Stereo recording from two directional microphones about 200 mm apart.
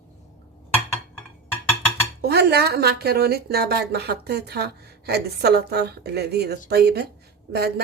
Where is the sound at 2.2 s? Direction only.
55° right (ahead or behind).